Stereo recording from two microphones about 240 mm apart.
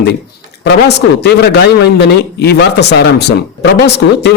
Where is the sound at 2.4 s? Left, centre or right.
Left.